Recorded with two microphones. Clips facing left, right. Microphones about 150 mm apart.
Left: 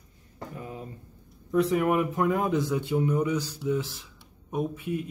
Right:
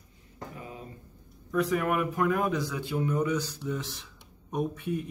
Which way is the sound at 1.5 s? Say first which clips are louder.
Left 4 dB; 25° left (ahead or behind).